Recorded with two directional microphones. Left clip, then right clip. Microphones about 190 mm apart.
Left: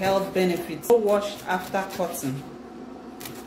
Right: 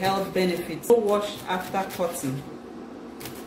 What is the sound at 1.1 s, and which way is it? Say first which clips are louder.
Speech: left 2 dB; 20° left (ahead or behind).